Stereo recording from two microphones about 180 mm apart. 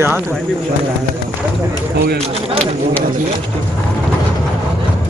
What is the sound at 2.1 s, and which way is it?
Speech, 35° right (ahead or behind).